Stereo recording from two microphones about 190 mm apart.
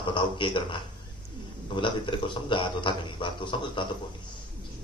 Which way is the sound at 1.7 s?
25° left (ahead or behind).